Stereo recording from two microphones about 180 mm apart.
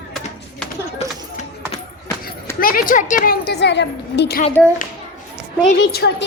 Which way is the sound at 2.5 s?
50° left (ahead or behind).